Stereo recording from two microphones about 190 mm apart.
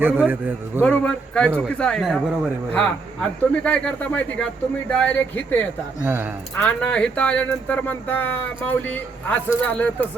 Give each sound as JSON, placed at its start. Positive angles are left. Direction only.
{"t": 0.0, "sound": "a man's voice", "side_deg": -10}
{"t": 0.8, "sound": "a man's voice", "side_deg": 5}
{"t": 6.0, "sound": "a man's voice", "side_deg": -10}
{"t": 6.6, "sound": "speech", "side_deg": 5}